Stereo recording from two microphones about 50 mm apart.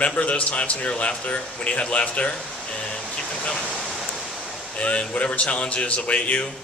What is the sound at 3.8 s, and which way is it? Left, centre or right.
Pink noise, centre.